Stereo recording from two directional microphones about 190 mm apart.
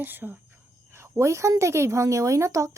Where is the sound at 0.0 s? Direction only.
10° right (ahead or behind).